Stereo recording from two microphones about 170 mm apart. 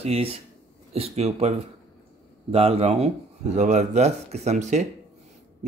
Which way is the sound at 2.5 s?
35° right (ahead or behind).